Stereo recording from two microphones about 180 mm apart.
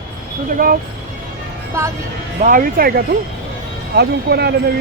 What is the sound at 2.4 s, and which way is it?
Speech, 50° right (ahead or behind).